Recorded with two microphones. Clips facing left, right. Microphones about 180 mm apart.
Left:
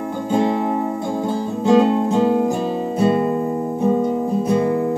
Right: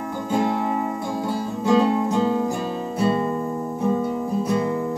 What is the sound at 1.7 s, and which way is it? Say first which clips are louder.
Music: left 4 dB; 30° left (ahead or behind).